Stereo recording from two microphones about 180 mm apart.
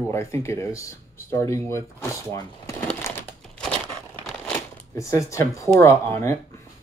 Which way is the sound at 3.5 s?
5° left (ahead or behind).